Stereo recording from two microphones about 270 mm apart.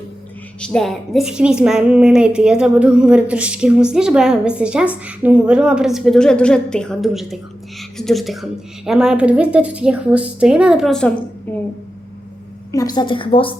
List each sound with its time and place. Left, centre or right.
0.6 s a woman's voice: centre
12.7 s a woman's voice: centre